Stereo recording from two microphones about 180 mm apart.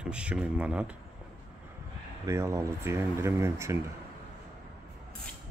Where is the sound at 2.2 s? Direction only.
15° right (ahead or behind).